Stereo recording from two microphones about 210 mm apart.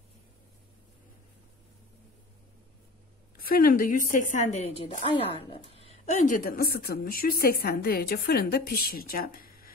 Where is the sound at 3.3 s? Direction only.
45° left (ahead or behind).